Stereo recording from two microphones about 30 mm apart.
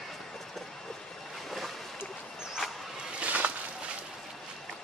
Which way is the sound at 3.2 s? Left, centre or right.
Right.